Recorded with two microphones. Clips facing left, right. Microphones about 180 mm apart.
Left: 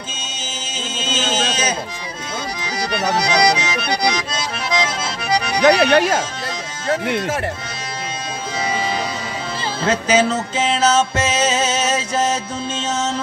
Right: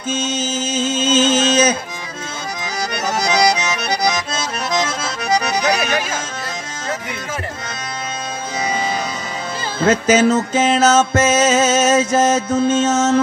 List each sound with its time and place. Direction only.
0.7 s music: 45° right (ahead or behind)
2.6 s accordion: 45° right (ahead or behind)
5.8 s music: 65° left (ahead or behind)
9.8 s music: 45° right (ahead or behind)